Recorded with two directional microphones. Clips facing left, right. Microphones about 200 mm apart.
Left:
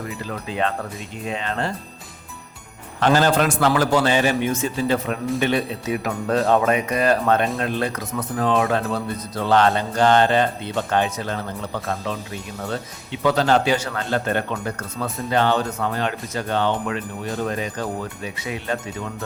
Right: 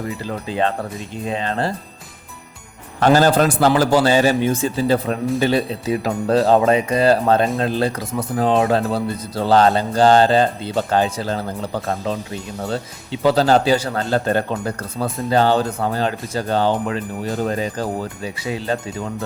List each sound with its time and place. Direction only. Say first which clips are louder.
0.3 s speech: right 3 dB; 30° right (ahead or behind)
3.0 s speech: right 4 dB; 40° right (ahead or behind)